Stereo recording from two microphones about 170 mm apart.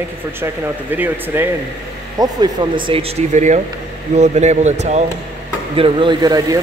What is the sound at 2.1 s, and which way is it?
Speech, 25° right (ahead or behind).